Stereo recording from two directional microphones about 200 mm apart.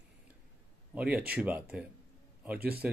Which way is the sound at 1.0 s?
5° right (ahead or behind).